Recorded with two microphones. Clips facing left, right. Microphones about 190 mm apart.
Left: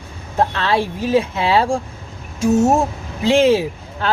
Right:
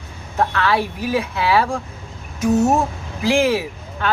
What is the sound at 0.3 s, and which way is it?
Speech, 25° left (ahead or behind).